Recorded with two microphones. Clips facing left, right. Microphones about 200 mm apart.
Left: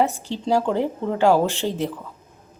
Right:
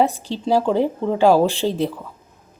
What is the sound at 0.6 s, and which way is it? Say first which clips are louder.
A woman's voice: right 3 dB; 10° right (ahead or behind).